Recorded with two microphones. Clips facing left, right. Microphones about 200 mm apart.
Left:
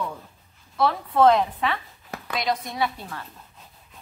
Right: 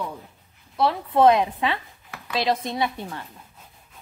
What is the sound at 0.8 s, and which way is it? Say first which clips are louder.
A woman's voice: right 1 dB; 20° right (ahead or behind).